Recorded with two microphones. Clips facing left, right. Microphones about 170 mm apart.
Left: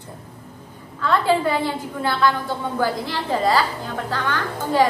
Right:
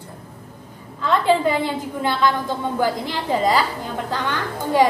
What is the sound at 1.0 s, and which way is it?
A woman's voice, 20° right (ahead or behind).